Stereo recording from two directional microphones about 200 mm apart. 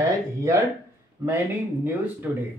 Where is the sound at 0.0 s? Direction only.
15° right (ahead or behind).